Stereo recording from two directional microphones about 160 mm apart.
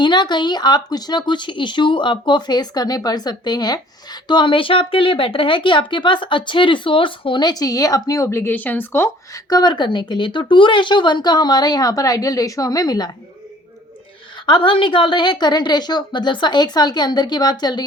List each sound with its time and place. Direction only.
0.0 s speech: 30° left (ahead or behind)
14.4 s speech: 30° left (ahead or behind)